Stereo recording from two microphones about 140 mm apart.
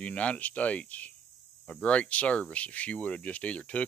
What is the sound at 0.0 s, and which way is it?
Speech, 10° left (ahead or behind).